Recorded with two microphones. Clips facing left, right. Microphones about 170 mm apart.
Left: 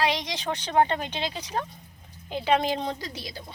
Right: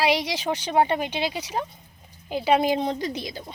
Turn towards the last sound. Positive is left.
turn(degrees=-20)  # may be behind; listen again after turning